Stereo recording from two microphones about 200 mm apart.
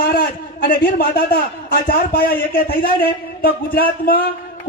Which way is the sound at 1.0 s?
50° left (ahead or behind).